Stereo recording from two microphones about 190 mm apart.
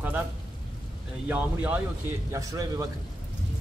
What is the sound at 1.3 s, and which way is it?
Speech, 5° right (ahead or behind).